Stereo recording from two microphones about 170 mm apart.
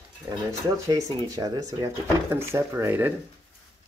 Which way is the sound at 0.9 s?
25° right (ahead or behind).